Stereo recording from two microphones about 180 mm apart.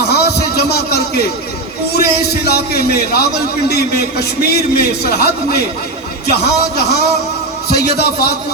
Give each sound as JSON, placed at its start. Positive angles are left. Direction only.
{"t": 0.0, "sound": "music", "side_deg": 65}
{"t": 1.9, "sound": "a man's voice", "side_deg": 60}